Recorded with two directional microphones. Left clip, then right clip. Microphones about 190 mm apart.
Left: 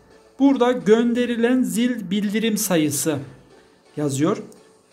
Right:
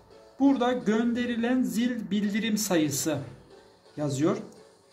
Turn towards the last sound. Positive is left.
turn(degrees=40)  # may be behind; listen again after turning